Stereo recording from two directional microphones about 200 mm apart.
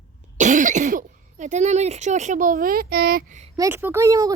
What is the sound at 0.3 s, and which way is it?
Speech, 40° right (ahead or behind).